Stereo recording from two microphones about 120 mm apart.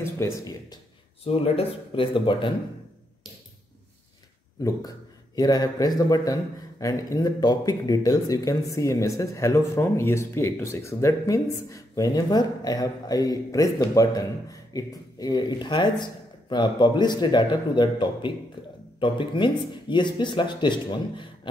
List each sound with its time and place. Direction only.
0.0 s speech: 25° left (ahead or behind)
1.2 s speech: 60° left (ahead or behind)
4.6 s speech: 30° left (ahead or behind)